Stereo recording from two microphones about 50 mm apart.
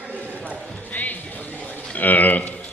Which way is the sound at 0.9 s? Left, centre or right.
Left.